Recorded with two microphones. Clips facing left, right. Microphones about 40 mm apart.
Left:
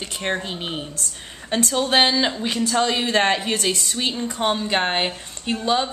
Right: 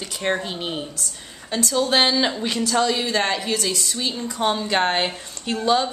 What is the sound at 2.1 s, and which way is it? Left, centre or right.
Speech, centre.